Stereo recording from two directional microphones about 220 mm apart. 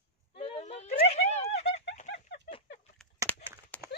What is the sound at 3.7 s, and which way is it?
Clip-clop, 10° left (ahead or behind).